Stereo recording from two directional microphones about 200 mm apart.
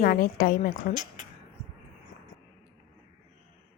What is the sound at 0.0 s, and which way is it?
Speech, 45° left (ahead or behind).